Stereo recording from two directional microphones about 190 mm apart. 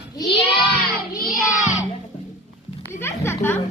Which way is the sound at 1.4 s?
5° right (ahead or behind).